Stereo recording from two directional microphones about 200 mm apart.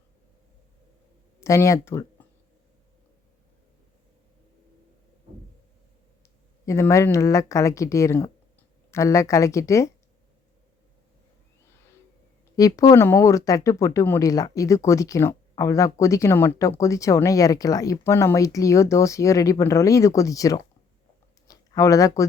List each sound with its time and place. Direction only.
1.4 s speech: 15° left (ahead or behind)
6.7 s speech: 15° left (ahead or behind)
12.5 s speech: 15° left (ahead or behind)